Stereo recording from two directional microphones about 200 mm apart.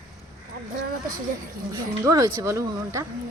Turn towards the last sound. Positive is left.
turn(degrees=-15)  # may be behind; listen again after turning